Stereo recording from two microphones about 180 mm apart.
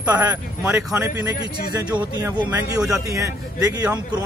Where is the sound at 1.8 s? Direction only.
25° right (ahead or behind).